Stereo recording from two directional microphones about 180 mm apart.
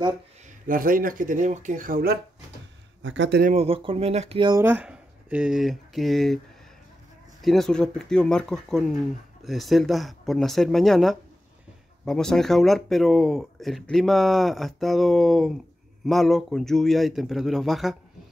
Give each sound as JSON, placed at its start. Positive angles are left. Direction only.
{"t": 0.7, "sound": "speech", "side_deg": -50}
{"t": 3.0, "sound": "speech", "side_deg": -90}
{"t": 3.4, "sound": "speech", "side_deg": -35}
{"t": 4.6, "sound": "speech", "side_deg": -10}
{"t": 7.4, "sound": "speech", "side_deg": 0}